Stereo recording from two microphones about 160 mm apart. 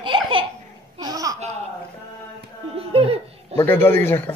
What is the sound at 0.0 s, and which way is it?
Laughter, 30° right (ahead or behind).